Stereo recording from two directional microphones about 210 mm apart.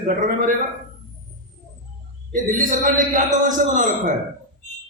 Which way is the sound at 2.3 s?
40° right (ahead or behind).